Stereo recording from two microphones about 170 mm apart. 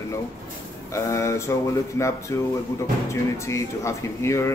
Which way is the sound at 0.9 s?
15° left (ahead or behind).